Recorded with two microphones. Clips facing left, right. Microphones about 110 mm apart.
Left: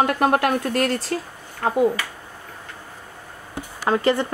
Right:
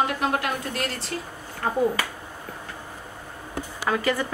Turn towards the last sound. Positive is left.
turn(degrees=30)  # may be behind; listen again after turning